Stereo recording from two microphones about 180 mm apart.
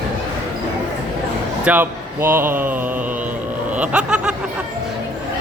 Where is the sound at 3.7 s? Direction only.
5° right (ahead or behind).